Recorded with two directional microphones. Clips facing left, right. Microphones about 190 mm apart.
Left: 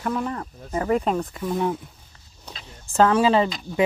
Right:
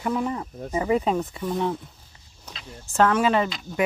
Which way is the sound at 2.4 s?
30° left (ahead or behind).